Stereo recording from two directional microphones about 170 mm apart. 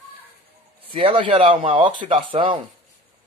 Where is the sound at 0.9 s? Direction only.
35° right (ahead or behind).